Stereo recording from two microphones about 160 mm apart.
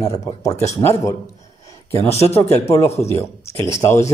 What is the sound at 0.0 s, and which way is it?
Speech, 20° left (ahead or behind).